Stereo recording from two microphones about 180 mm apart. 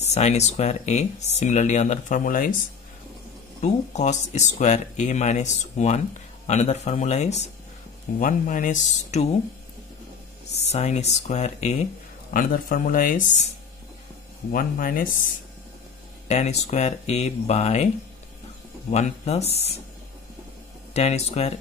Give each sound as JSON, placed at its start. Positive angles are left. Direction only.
{"t": 0.0, "sound": "speech", "side_deg": 40}
{"t": 3.6, "sound": "speech", "side_deg": 40}
{"t": 10.7, "sound": "speech", "side_deg": 40}
{"t": 12.3, "sound": "speech", "side_deg": 50}
{"t": 14.5, "sound": "speech", "side_deg": 50}
{"t": 16.3, "sound": "speech", "side_deg": 40}
{"t": 18.9, "sound": "speech", "side_deg": 40}
{"t": 20.9, "sound": "speech", "side_deg": 35}